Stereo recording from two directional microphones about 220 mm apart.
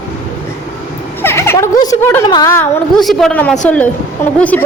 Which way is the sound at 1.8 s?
15° left (ahead or behind).